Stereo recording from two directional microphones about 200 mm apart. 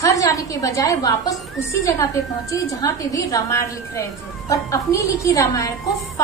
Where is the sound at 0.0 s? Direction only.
15° left (ahead or behind).